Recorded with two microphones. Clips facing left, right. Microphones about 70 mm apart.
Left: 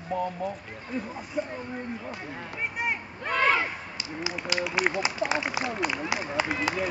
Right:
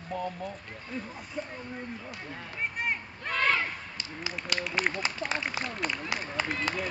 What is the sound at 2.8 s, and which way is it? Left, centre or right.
Speech, centre.